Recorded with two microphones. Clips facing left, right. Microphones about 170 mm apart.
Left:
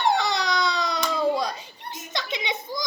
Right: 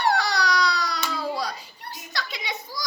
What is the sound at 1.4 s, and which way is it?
Children playing, 20° left (ahead or behind).